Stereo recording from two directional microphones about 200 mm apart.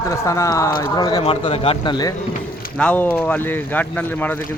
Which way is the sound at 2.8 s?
10° left (ahead or behind).